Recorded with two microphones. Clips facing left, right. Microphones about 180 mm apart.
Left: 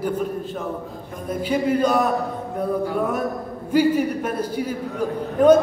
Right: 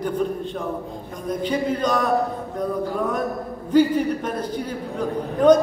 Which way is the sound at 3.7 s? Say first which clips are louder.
Right 1 dB; 10° left (ahead or behind).